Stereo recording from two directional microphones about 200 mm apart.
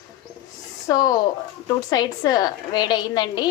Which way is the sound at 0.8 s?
20° left (ahead or behind).